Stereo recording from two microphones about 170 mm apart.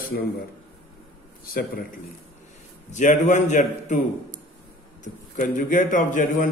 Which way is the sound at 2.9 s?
45° left (ahead or behind).